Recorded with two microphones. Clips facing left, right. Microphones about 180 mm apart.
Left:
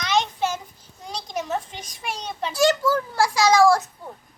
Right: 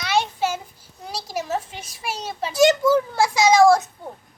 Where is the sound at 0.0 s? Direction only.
10° right (ahead or behind).